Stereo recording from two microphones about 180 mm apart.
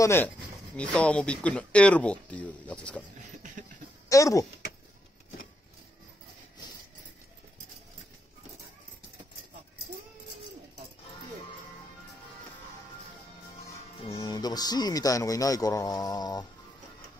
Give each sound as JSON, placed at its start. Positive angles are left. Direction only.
{"t": 0.0, "sound": "speech", "side_deg": 15}
{"t": 3.3, "sound": "a sound", "side_deg": -45}
{"t": 4.1, "sound": "speech", "side_deg": 20}
{"t": 14.1, "sound": "speech", "side_deg": 20}